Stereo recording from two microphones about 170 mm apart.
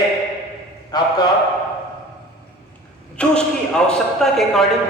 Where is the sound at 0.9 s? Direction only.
25° left (ahead or behind).